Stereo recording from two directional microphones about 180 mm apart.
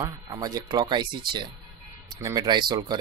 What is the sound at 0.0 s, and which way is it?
Speech, 20° right (ahead or behind).